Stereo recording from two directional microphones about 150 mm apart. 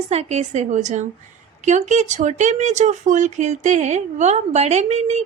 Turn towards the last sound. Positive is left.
turn(degrees=-45)  # may be behind; listen again after turning